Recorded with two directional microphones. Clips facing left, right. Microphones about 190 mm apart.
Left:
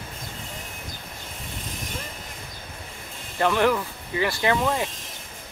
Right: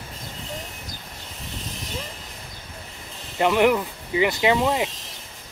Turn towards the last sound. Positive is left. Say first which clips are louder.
# right 3 dB
turn(degrees=-20)  # may be behind; listen again after turning